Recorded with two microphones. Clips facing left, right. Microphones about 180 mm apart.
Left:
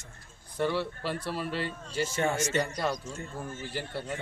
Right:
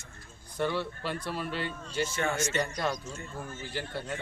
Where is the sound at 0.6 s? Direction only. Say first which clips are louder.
Left 1 dB; 5° left (ahead or behind).